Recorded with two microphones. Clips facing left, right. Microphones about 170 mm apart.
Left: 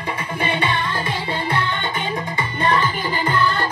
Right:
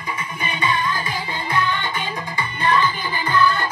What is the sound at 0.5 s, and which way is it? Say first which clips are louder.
Music: right 2 dB; 30° left (ahead or behind).